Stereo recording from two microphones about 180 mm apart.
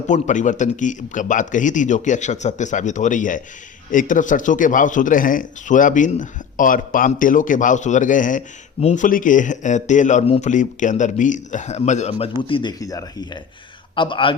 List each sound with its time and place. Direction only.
0.1 s speech: 45° left (ahead or behind)
12.4 s a man's voice: 30° left (ahead or behind)